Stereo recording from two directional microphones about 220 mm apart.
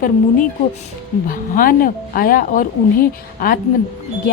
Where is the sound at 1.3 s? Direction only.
40° left (ahead or behind).